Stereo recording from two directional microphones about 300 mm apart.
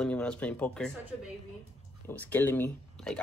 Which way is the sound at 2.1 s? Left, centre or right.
Centre.